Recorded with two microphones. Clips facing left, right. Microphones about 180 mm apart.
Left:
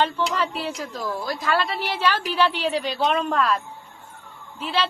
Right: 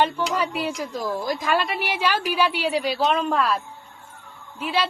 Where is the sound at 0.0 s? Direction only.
10° right (ahead or behind).